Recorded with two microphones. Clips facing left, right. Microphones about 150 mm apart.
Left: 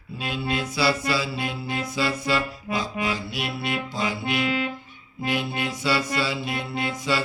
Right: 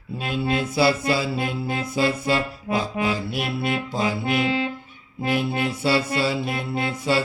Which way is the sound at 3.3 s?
50° right (ahead or behind).